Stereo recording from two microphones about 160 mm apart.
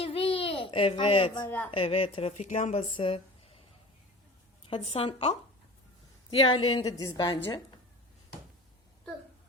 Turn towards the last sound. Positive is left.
turn(degrees=30)  # may be behind; listen again after turning